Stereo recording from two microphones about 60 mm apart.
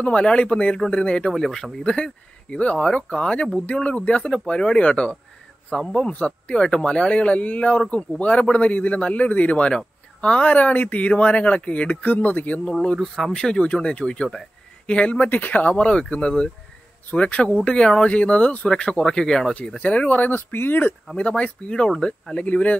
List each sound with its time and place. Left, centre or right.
0.0 s speech: centre
13.0 s speech: centre
13.3 s speech: centre; by 20.9 s left
21.2 s speech: centre